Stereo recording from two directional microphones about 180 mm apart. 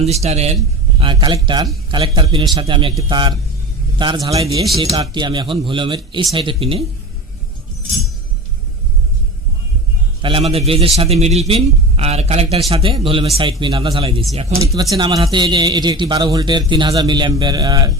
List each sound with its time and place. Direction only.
0.0 s a man's voice: 35° right (ahead or behind)
10.2 s a man's voice: 30° right (ahead or behind)